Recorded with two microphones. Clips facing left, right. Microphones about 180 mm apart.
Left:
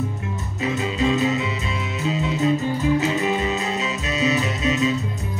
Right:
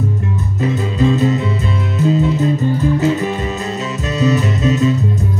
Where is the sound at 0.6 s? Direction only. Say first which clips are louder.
Right 5 dB; 40° right (ahead or behind).